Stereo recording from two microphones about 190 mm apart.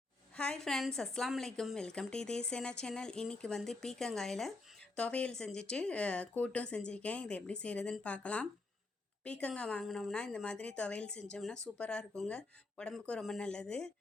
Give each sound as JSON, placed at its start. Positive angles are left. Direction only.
{"t": 0.3, "sound": "a woman's voice", "side_deg": 5}